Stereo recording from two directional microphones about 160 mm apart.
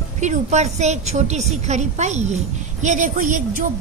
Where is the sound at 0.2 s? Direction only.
50° right (ahead or behind).